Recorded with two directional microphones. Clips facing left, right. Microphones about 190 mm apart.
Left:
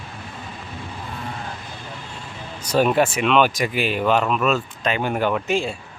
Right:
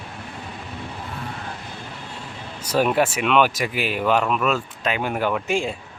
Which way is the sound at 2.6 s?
5° right (ahead or behind).